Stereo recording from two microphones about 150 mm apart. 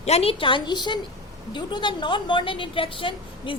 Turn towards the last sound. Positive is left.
turn(degrees=35)  # may be behind; listen again after turning